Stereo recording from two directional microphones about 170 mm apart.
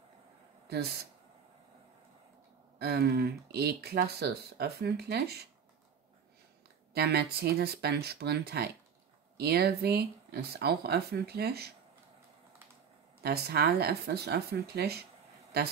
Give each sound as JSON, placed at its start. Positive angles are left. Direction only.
{"t": 2.8, "sound": "speech", "side_deg": -65}
{"t": 6.9, "sound": "speech", "side_deg": -70}
{"t": 13.2, "sound": "speech", "side_deg": -70}